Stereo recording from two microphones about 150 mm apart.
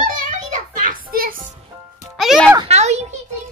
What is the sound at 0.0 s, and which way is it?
Music, 60° right (ahead or behind).